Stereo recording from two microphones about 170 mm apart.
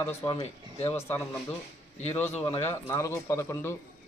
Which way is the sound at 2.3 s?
35° left (ahead or behind).